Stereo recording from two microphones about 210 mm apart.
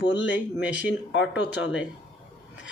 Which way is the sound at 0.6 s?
5° right (ahead or behind).